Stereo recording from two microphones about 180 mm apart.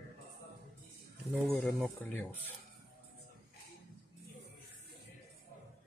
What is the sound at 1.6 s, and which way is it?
Speech, centre (ahead or behind).